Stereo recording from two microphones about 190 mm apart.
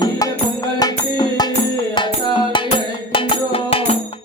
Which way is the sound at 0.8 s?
20° left (ahead or behind).